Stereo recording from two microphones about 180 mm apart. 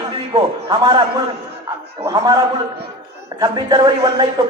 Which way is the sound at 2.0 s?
20° right (ahead or behind).